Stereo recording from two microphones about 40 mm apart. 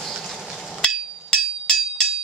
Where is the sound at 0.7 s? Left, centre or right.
Centre.